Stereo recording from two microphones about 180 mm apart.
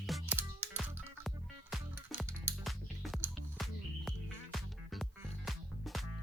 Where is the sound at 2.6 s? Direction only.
Centre (ahead or behind).